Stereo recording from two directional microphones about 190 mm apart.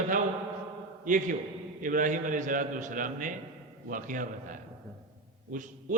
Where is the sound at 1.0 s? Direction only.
45° right (ahead or behind).